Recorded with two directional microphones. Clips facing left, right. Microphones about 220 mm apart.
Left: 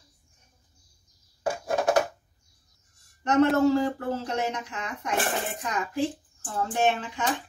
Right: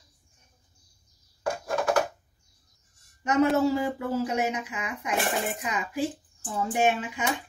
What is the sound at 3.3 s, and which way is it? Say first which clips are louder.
Speech: left 2 dB; 10° right (ahead or behind).